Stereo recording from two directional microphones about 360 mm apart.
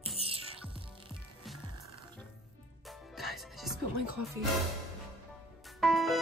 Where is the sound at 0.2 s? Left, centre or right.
Centre.